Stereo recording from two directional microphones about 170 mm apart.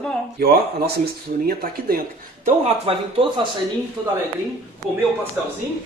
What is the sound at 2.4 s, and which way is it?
Speech, 35° right (ahead or behind).